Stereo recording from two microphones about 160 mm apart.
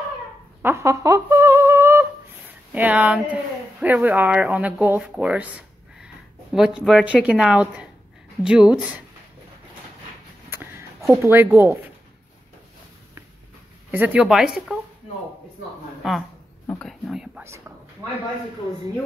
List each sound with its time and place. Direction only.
0.6 s humming: 15° right (ahead or behind)
3.8 s speech: 10° right (ahead or behind)
10.5 s a sound: 15° right (ahead or behind)
11.2 s speech: 15° right (ahead or behind)
13.9 s speech: 10° right (ahead or behind)
16.0 s speech: centre (ahead or behind)
16.6 s a sound: 10° left (ahead or behind)
17.4 s speech: 15° right (ahead or behind)